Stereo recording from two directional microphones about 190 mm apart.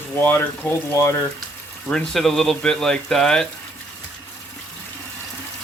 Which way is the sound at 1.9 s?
Centre (ahead or behind).